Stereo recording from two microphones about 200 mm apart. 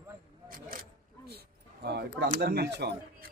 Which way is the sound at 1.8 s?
55° right (ahead or behind).